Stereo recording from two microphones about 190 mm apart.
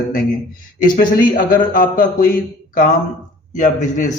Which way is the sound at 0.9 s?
50° left (ahead or behind).